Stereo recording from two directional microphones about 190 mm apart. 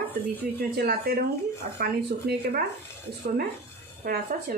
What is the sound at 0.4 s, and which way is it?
Speech, 50° right (ahead or behind).